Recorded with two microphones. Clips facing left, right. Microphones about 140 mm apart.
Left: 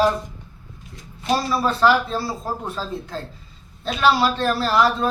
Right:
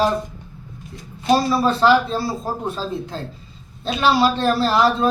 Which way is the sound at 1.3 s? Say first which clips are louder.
Right 4 dB; 25° right (ahead or behind).